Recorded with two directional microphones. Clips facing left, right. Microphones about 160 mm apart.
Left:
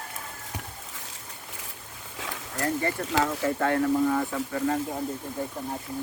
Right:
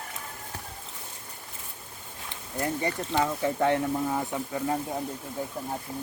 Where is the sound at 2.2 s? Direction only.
90° left.